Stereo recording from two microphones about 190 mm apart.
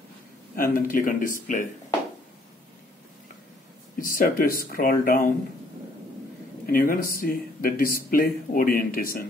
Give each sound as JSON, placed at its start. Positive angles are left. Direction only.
{"t": 0.6, "sound": "speech", "side_deg": 45}
{"t": 4.0, "sound": "speech", "side_deg": 45}
{"t": 6.6, "sound": "speech", "side_deg": 50}